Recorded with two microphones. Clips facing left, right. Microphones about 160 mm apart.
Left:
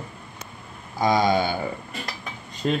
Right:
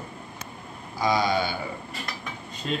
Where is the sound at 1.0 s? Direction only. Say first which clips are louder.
Left 3 dB; 45° left (ahead or behind).